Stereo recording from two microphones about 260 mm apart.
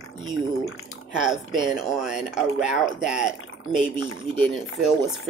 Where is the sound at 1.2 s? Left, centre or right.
Centre.